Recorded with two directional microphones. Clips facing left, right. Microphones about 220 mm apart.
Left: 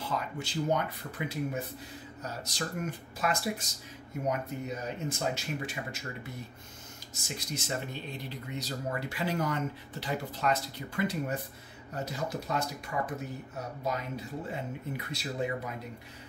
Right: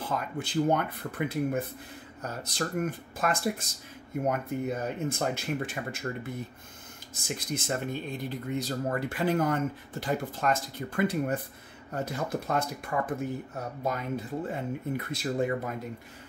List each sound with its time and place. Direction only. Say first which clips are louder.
0.0 s speech: right 2 dB; 50° right (ahead or behind)